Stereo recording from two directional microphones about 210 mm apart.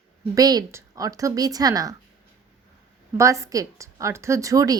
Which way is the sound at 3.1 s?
15° right (ahead or behind).